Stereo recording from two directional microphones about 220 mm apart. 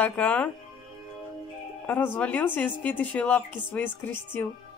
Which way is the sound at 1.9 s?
10° left (ahead or behind).